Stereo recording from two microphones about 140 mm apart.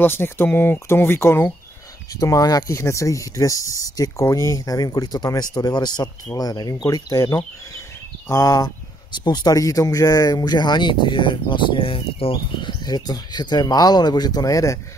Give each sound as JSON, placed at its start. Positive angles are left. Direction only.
{"t": 0.0, "sound": "speech", "side_deg": 15}